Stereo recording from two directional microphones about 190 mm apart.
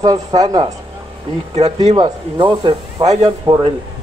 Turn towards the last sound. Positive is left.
turn(degrees=-20)  # may be behind; listen again after turning